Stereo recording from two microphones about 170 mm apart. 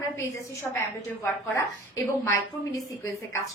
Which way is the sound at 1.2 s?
15° left (ahead or behind).